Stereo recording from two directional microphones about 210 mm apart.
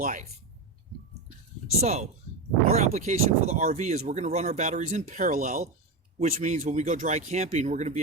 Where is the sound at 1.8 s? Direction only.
30° right (ahead or behind).